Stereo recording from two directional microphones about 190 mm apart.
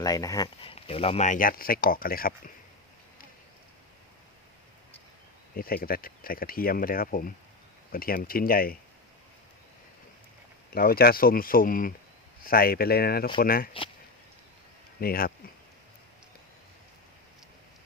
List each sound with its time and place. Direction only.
0.0 s speech: 20° left (ahead or behind); by 2.3 s 50° left (ahead or behind)
5.5 s speech: 50° left (ahead or behind)
10.7 s speech: 50° left (ahead or behind)
15.0 s speech: 50° left (ahead or behind)